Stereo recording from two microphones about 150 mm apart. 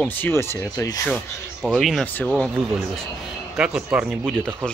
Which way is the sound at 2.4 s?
Centre (ahead or behind).